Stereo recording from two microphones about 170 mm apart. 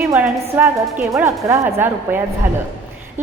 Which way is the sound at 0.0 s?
15° right (ahead or behind).